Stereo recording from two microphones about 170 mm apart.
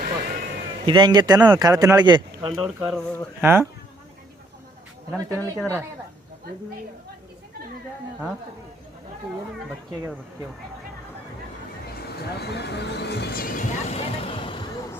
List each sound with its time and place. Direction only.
0.0 s a sound: 60° right (ahead or behind)
0.9 s a man's voice: 25° right (ahead or behind)
2.5 s speech: centre (ahead or behind)
3.4 s speech: 15° right (ahead or behind)
5.3 s a woman's voice: 15° left (ahead or behind)
11.9 s speech: 70° left (ahead or behind); by 14.7 s 30° left (ahead or behind)